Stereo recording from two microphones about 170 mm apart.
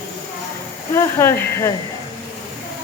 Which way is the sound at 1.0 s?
15° left (ahead or behind).